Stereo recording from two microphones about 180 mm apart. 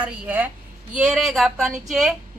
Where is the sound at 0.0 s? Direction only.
10° right (ahead or behind).